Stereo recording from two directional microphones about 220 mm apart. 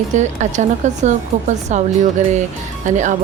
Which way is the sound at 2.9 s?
35° right (ahead or behind).